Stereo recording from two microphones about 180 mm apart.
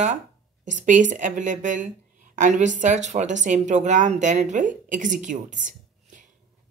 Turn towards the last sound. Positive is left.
turn(degrees=-45)  # may be behind; listen again after turning